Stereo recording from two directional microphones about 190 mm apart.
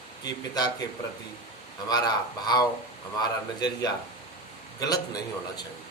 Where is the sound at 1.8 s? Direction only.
20° left (ahead or behind).